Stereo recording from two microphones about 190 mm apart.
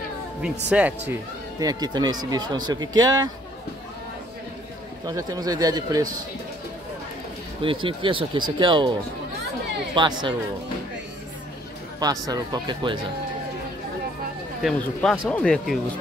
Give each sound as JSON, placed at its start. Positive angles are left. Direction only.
{"t": 0.7, "sound": "speech", "side_deg": -5}
{"t": 1.6, "sound": "speech", "side_deg": -20}
{"t": 5.0, "sound": "speech", "side_deg": -20}
{"t": 7.6, "sound": "speech", "side_deg": -25}
{"t": 9.9, "sound": "speech", "side_deg": -25}
{"t": 12.0, "sound": "speech", "side_deg": -20}
{"t": 14.6, "sound": "speech", "side_deg": 0}